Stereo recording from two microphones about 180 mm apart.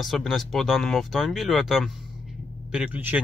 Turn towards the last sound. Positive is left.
turn(degrees=-5)  # may be behind; listen again after turning